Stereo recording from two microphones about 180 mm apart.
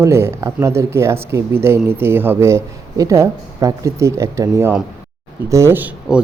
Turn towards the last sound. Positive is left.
turn(degrees=-10)  # may be behind; listen again after turning